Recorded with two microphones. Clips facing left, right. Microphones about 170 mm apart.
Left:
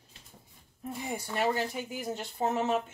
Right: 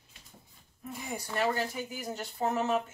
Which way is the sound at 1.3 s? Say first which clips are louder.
Even; 20° left (ahead or behind).